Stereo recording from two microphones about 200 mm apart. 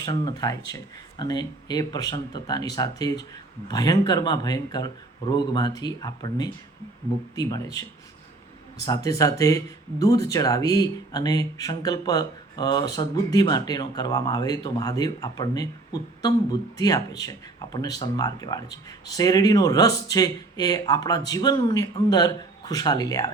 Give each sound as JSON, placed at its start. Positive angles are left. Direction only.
{"t": 0.0, "sound": "speech", "side_deg": 20}